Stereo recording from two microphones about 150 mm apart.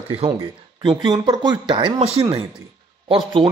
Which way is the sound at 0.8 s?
25° right (ahead or behind).